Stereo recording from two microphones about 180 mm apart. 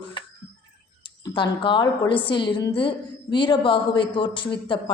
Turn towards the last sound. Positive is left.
turn(degrees=25)  # may be behind; listen again after turning